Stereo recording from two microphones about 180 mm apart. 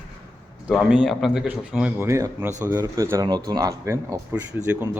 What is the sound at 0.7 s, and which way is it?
Speech, 5° right (ahead or behind).